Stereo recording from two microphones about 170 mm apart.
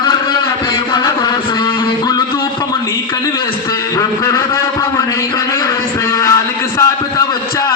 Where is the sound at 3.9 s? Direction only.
20° left (ahead or behind).